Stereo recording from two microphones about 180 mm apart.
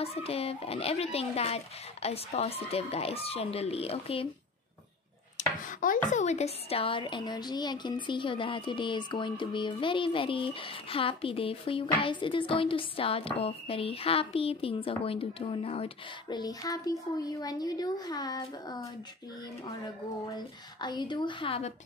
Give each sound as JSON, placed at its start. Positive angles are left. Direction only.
{"t": 0.0, "sound": "speech", "side_deg": 35}
{"t": 5.7, "sound": "a sound", "side_deg": 50}
{"t": 6.1, "sound": "speech", "side_deg": 40}
{"t": 20.3, "sound": "speech", "side_deg": 25}